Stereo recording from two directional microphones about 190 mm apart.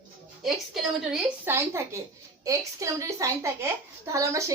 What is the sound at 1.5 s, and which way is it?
A woman's voice, 15° right (ahead or behind).